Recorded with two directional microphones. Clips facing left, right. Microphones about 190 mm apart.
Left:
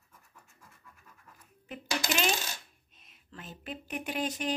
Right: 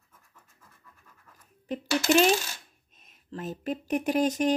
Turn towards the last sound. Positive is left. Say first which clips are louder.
# right 9 dB
turn(degrees=-45)  # may be behind; listen again after turning